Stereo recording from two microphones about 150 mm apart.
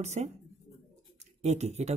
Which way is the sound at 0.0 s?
45° right (ahead or behind).